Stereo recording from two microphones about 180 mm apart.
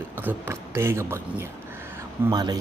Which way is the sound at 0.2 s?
10° right (ahead or behind).